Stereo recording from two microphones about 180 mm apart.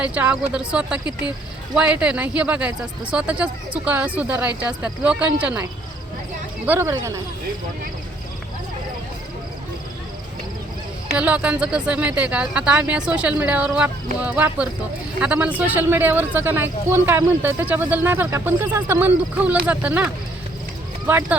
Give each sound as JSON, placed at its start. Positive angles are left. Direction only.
{"t": 0.0, "sound": "speech", "side_deg": -5}
{"t": 6.7, "sound": "speech", "side_deg": -15}
{"t": 11.2, "sound": "speech", "side_deg": -5}
{"t": 21.1, "sound": "speech", "side_deg": -10}